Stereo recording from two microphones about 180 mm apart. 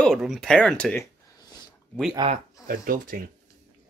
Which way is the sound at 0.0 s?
Centre (ahead or behind).